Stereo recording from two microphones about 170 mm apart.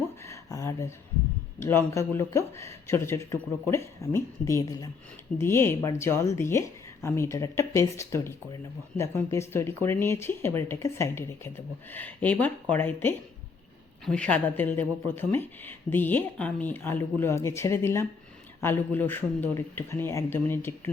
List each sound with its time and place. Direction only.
0.3 s speech: 20° left (ahead or behind)